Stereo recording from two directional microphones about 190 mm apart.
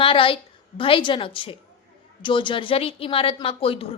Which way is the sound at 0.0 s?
30° left (ahead or behind).